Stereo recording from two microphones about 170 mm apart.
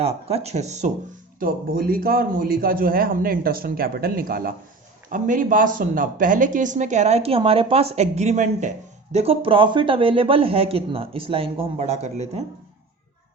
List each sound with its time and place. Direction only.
0.0 s speech: 35° right (ahead or behind)
1.4 s a man's voice: 55° right (ahead or behind); by 12.4 s 40° right (ahead or behind)